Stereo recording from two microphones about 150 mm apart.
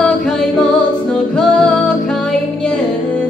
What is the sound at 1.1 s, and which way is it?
Music, 5° left (ahead or behind).